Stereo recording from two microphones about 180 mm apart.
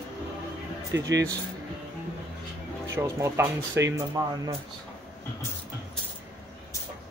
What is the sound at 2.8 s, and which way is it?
Speech, 15° right (ahead or behind).